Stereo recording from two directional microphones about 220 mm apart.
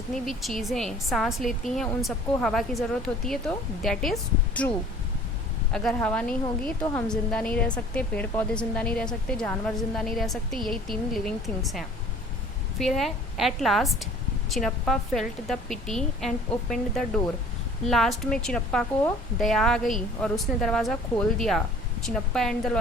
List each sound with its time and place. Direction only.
0.3 s a woman's voice: centre (ahead or behind)
5.7 s a woman's voice: 5° left (ahead or behind)